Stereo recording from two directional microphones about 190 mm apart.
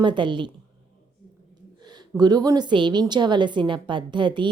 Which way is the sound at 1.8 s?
20° right (ahead or behind).